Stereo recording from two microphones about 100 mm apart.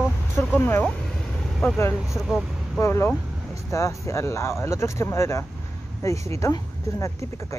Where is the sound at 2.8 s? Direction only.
25° left (ahead or behind).